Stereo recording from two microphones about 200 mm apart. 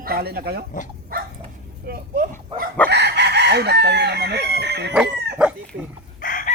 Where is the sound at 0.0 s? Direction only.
50° right (ahead or behind).